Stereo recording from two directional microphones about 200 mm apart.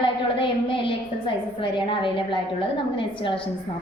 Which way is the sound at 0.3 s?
25° left (ahead or behind).